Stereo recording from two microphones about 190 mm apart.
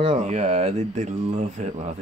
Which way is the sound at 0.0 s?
30° right (ahead or behind).